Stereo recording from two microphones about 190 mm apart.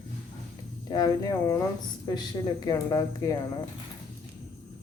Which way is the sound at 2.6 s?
20° left (ahead or behind).